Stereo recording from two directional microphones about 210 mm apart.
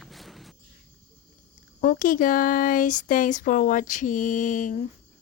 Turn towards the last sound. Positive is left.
turn(degrees=35)  # may be behind; listen again after turning